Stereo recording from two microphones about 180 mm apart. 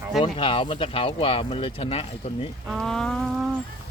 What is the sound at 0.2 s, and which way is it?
Speech, 30° left (ahead or behind).